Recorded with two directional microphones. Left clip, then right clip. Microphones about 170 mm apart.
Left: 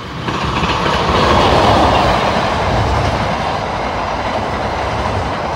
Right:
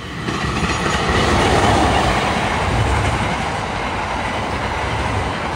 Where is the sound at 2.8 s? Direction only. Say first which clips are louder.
Left 3 dB; 50° left (ahead or behind).